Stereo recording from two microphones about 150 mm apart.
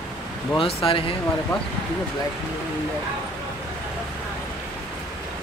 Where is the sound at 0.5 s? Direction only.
35° left (ahead or behind).